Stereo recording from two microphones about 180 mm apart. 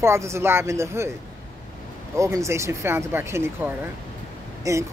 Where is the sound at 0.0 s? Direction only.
15° right (ahead or behind).